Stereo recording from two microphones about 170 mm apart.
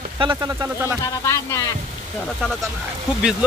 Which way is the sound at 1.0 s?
15° left (ahead or behind).